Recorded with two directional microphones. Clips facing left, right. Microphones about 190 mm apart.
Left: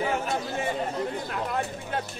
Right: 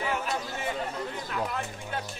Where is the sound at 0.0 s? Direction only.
45° left (ahead or behind).